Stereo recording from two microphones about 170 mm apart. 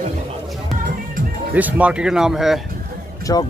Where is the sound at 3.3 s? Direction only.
20° left (ahead or behind).